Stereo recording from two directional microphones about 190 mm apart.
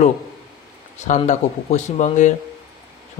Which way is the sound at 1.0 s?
35° left (ahead or behind).